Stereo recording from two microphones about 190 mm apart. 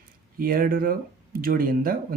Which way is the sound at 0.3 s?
50° right (ahead or behind).